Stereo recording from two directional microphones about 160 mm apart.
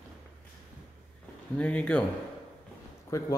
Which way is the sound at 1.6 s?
10° left (ahead or behind).